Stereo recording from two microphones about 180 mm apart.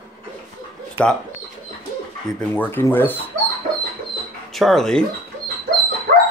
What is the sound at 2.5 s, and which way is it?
Speech, 10° left (ahead or behind).